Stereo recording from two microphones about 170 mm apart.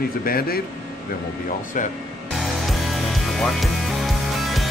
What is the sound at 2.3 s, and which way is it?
Music, centre (ahead or behind).